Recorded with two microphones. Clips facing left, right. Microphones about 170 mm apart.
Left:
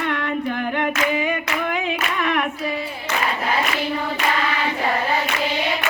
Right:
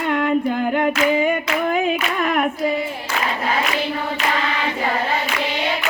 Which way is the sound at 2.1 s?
40° right (ahead or behind).